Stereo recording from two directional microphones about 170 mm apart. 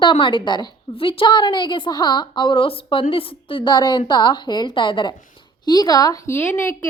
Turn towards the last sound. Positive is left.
turn(degrees=15)  # may be behind; listen again after turning